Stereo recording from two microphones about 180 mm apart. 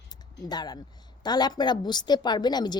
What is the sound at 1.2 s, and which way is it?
A woman's voice, 20° left (ahead or behind).